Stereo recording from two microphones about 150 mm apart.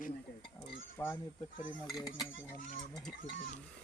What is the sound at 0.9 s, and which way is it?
Speech, 15° left (ahead or behind).